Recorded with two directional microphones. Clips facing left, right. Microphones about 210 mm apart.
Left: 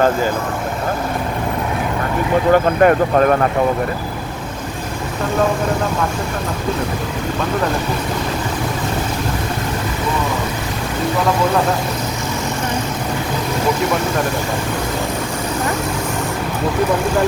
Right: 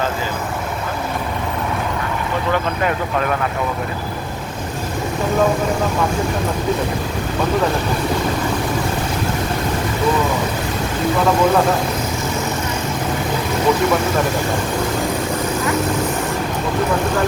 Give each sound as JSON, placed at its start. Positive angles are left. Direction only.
{"t": 2.5, "sound": "speech", "side_deg": 45}